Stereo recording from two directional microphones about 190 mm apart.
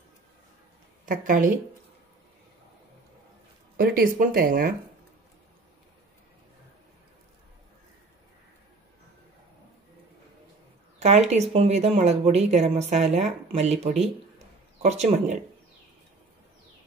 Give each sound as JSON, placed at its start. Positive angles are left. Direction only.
{"t": 1.0, "sound": "speech", "side_deg": -45}
{"t": 3.7, "sound": "speech", "side_deg": -50}
{"t": 11.0, "sound": "speech", "side_deg": -35}